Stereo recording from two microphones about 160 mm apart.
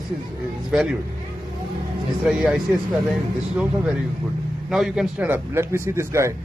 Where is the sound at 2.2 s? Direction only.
5° right (ahead or behind).